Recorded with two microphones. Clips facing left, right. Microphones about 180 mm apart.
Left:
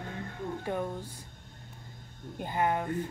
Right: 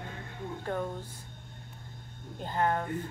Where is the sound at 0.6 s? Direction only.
15° left (ahead or behind).